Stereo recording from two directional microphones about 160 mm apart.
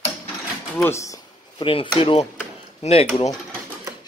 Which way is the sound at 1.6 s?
35° left (ahead or behind).